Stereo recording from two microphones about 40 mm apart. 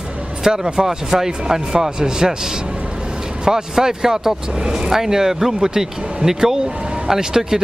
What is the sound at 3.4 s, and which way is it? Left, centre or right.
Speech, centre.